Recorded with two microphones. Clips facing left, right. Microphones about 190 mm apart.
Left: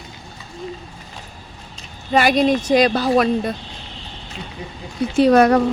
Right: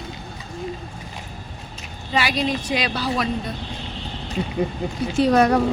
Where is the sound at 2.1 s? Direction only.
50° left (ahead or behind).